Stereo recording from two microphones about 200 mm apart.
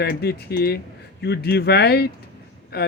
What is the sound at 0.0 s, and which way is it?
A man's voice, 50° left (ahead or behind).